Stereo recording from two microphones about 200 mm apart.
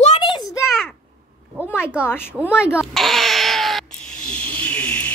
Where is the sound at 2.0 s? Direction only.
10° left (ahead or behind).